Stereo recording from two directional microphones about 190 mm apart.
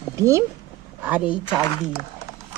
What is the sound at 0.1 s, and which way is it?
Speech, 15° right (ahead or behind).